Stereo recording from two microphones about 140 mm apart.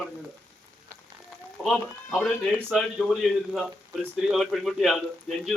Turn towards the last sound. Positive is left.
turn(degrees=0)  # may be behind; listen again after turning